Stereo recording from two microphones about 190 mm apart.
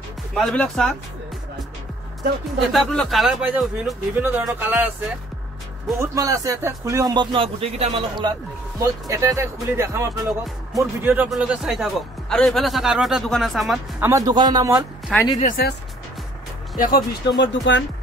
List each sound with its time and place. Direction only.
0.3 s a man's voice: centre (ahead or behind)
2.7 s a man's voice: centre (ahead or behind)
5.9 s speech: 15° right (ahead or behind)
8.7 s a man's voice: 20° right (ahead or behind); by 14.0 s centre (ahead or behind)
14.0 s speech: 15° right (ahead or behind)
15.1 s a man's voice: 5° left (ahead or behind)
15.4 s speech: 45° left (ahead or behind)
16.7 s speech: 45° left (ahead or behind)
17.4 s speech: 70° left (ahead or behind)